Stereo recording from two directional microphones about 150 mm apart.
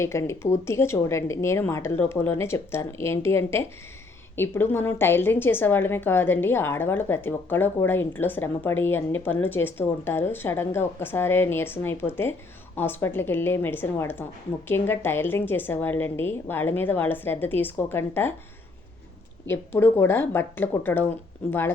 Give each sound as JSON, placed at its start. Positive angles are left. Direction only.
{"t": 0.0, "sound": "a woman's voice", "side_deg": 20}
{"t": 19.5, "sound": "a woman's voice", "side_deg": 15}